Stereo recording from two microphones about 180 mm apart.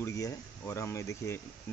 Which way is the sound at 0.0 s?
15° left (ahead or behind).